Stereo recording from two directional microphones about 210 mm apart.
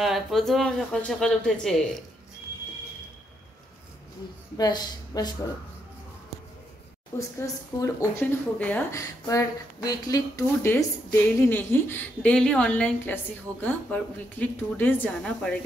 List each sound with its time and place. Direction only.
0.0 s speech: centre (ahead or behind)
4.6 s speech: 20° left (ahead or behind)
7.2 s speech: 15° left (ahead or behind)